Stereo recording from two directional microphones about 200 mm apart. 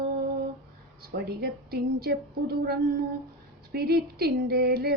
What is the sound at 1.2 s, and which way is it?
Female singing, 50° right (ahead or behind).